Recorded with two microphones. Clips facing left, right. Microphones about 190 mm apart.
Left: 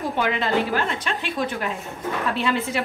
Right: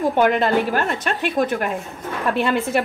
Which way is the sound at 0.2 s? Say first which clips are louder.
Right 4 dB; 50° right (ahead or behind).